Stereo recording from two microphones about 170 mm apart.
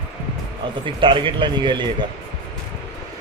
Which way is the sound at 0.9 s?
30° right (ahead or behind).